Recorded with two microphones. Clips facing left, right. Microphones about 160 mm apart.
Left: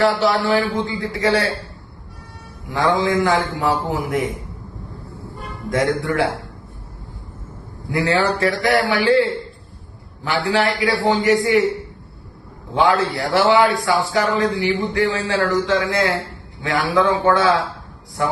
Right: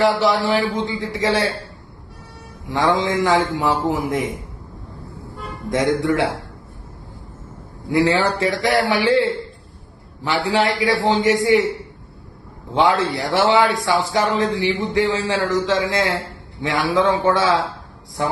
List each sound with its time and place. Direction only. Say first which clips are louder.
0.0 s a man's voice: even; 20° right (ahead or behind)
2.6 s a man's voice: even; 20° right (ahead or behind)
5.7 s a man's voice: right 1 dB; 20° right (ahead or behind)
7.9 s a man's voice: right 1 dB; 20° right (ahead or behind)
10.2 s a man's voice: even; 20° right (ahead or behind)
12.7 s a man's voice: even; 20° right (ahead or behind)